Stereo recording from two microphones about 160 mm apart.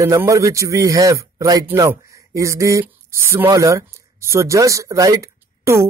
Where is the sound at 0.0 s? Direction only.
20° right (ahead or behind).